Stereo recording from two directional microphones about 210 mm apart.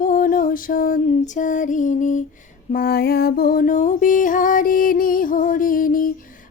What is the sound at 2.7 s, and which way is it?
Music, 45° left (ahead or behind).